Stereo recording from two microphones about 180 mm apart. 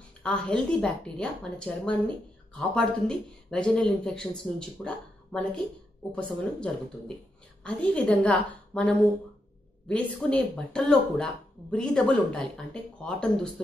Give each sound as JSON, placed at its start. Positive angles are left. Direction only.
{"t": 0.2, "sound": "a woman's voice", "side_deg": 5}